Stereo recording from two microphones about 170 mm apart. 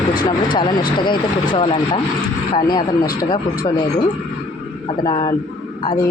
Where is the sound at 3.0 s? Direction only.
60° left (ahead or behind).